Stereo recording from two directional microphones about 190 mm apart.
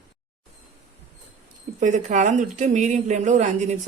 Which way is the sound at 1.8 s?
40° right (ahead or behind).